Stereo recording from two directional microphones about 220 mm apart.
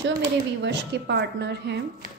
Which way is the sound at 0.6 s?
50° right (ahead or behind).